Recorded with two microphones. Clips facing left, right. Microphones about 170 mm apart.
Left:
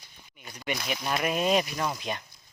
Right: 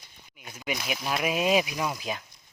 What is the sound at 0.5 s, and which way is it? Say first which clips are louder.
Speech: even; 5° right (ahead or behind).